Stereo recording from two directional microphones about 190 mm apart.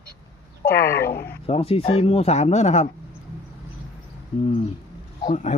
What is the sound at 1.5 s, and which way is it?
Speech, 30° left (ahead or behind).